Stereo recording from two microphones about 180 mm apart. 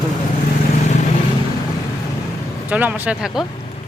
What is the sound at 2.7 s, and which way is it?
Speech, 10° right (ahead or behind).